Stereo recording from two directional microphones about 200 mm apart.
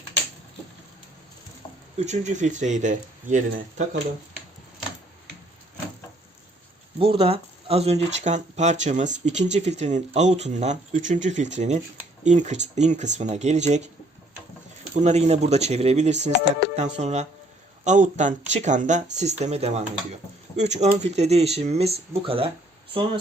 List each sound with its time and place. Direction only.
2.0 s speech: 35° right (ahead or behind)
7.0 s speech: 30° right (ahead or behind)
14.9 s speech: 35° right (ahead or behind)